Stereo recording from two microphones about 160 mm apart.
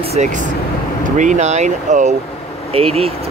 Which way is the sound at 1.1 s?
50° right (ahead or behind).